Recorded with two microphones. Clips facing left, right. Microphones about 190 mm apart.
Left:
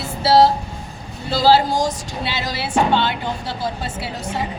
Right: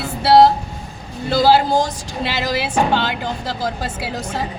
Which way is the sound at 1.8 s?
90° right.